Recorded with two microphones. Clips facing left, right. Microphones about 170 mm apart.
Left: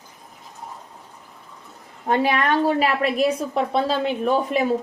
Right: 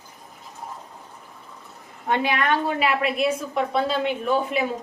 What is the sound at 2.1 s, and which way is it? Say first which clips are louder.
A woman's voice: left 2 dB; 35° left (ahead or behind).